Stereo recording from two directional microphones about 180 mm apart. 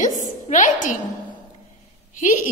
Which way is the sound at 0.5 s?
45° left (ahead or behind).